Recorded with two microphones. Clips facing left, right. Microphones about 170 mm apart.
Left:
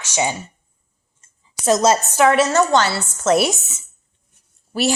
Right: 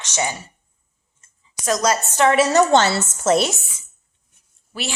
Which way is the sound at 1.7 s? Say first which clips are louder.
Left 4 dB; 25° left (ahead or behind).